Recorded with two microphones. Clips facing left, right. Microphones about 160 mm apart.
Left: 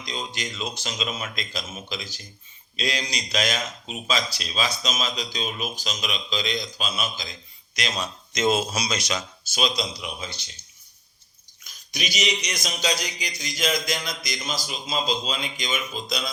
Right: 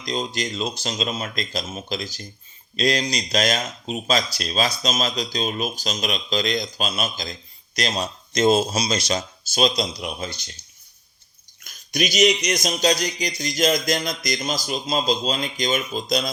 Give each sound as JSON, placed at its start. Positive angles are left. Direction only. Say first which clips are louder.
{"t": 0.0, "sound": "speech", "louder": "right 6 dB", "side_deg": -40}
{"t": 11.6, "sound": "speech", "louder": "right 9 dB", "side_deg": -50}